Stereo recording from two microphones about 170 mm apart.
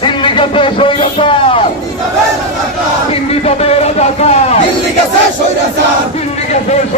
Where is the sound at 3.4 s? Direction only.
40° left (ahead or behind).